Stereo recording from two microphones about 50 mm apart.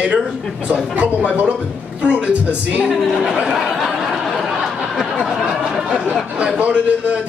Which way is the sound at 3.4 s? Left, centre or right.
Centre.